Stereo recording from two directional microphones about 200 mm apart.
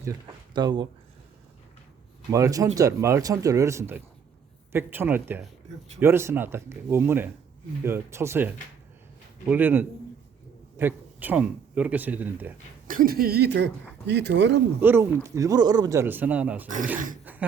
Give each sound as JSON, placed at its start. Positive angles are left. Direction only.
{"t": 0.0, "sound": "speech", "side_deg": -20}
{"t": 2.3, "sound": "speech", "side_deg": -15}
{"t": 12.9, "sound": "speech", "side_deg": -45}
{"t": 14.8, "sound": "speech", "side_deg": -10}
{"t": 16.6, "sound": "speech", "side_deg": -40}